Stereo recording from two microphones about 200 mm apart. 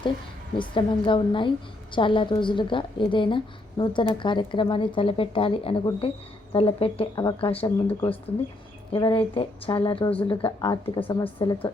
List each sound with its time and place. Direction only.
0.6 s a woman's voice: 25° left (ahead or behind)